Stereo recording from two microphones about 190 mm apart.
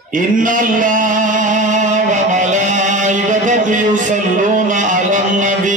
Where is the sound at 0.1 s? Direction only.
45° right (ahead or behind).